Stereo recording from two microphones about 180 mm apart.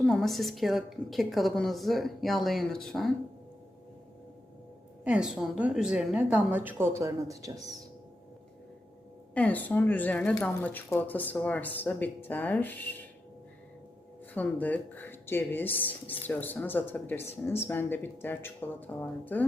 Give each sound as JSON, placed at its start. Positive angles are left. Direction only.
{"t": 0.0, "sound": "a woman's voice", "side_deg": 0}
{"t": 5.0, "sound": "a woman's voice", "side_deg": -5}
{"t": 9.3, "sound": "speech", "side_deg": 10}
{"t": 14.3, "sound": "speech", "side_deg": 10}